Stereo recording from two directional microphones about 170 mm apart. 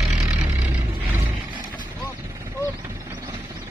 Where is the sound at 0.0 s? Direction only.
5° right (ahead or behind).